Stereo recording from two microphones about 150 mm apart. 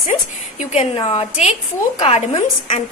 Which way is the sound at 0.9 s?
40° left (ahead or behind).